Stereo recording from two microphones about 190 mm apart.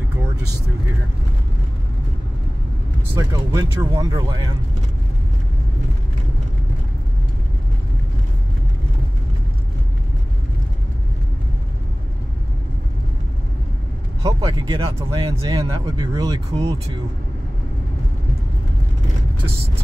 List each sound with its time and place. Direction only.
3.2 s speech: 15° right (ahead or behind)
14.2 s speech: 25° right (ahead or behind)